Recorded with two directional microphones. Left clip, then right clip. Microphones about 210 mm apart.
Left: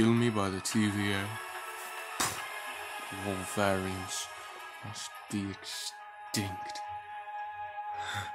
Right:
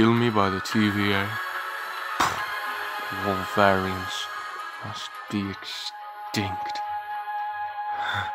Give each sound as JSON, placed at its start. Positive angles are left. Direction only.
{"t": 0.0, "sound": "speech", "side_deg": -5}
{"t": 2.2, "sound": "music", "side_deg": -5}
{"t": 3.2, "sound": "speech", "side_deg": -45}
{"t": 3.5, "sound": "speech", "side_deg": -5}
{"t": 6.3, "sound": "speech", "side_deg": -10}
{"t": 8.0, "sound": "music", "side_deg": -10}